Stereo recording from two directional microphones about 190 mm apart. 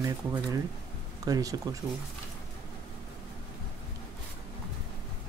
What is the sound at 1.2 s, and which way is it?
Speech, 20° right (ahead or behind).